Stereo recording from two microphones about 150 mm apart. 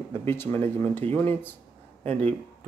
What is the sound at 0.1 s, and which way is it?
Speech, 15° left (ahead or behind).